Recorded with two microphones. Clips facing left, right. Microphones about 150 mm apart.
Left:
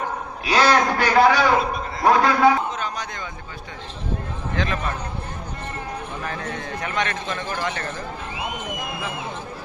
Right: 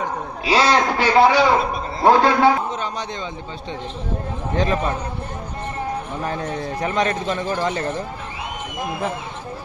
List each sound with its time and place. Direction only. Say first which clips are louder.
0.4 s a man's voice: right 1 dB; 25° right (ahead or behind)
4.5 s a man's voice: right 6 dB; 30° right (ahead or behind)
6.2 s a man's voice: right 6 dB; 30° right (ahead or behind)